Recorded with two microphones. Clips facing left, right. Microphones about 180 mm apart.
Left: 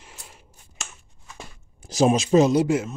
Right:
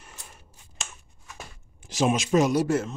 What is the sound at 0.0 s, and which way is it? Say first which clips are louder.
Scissors: left 1 dB; 15° left (ahead or behind).